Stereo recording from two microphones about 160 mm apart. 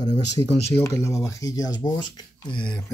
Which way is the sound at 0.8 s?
20° left (ahead or behind).